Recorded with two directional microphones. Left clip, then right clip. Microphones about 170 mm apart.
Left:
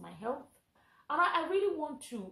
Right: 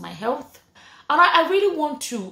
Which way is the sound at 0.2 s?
15° right (ahead or behind).